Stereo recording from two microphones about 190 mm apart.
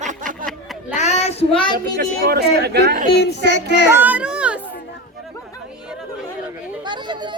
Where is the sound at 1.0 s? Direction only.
35° left (ahead or behind).